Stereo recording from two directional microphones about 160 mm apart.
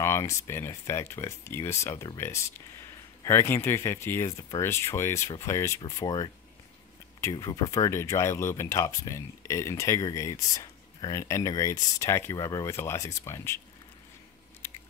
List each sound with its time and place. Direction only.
0.0 s speech: 15° left (ahead or behind)